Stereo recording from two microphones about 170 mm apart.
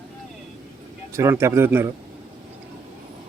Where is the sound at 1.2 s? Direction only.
15° right (ahead or behind).